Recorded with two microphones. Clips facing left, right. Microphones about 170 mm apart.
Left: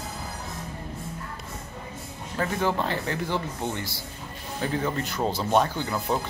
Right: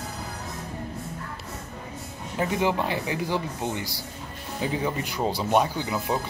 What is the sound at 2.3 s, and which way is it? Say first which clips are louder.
Speech: right 1 dB; 15° right (ahead or behind).